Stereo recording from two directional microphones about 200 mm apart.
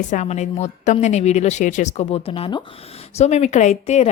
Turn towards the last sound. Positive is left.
turn(degrees=35)  # may be behind; listen again after turning